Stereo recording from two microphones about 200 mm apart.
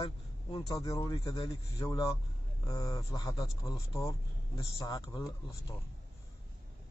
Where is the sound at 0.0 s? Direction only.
20° left (ahead or behind).